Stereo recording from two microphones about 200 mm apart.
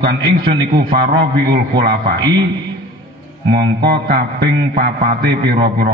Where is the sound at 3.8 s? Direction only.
55° right (ahead or behind).